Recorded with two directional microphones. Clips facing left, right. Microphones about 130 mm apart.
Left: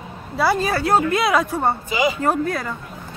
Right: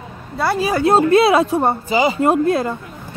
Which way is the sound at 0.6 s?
20° right (ahead or behind).